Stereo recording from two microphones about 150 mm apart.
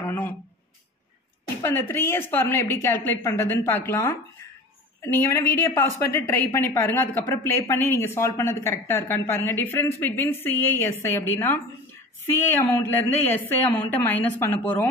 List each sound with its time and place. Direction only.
1.6 s a woman's voice: 15° left (ahead or behind)